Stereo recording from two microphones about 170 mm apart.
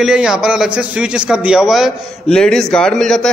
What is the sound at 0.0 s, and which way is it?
A man's voice, 5° right (ahead or behind).